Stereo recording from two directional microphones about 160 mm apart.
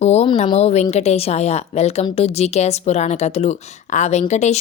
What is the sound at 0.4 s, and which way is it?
A woman's voice, 40° left (ahead or behind).